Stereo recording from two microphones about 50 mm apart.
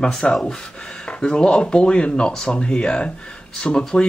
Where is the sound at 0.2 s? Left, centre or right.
Centre.